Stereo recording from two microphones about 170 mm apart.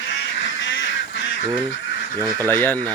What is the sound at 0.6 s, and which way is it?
Goose, 90° left.